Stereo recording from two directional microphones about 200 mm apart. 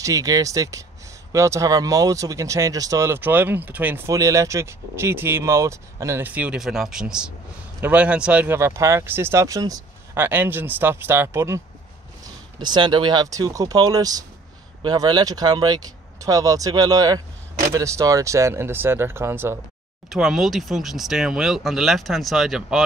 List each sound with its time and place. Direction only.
0.0 s speech: 15° right (ahead or behind)
20.1 s speech: centre (ahead or behind)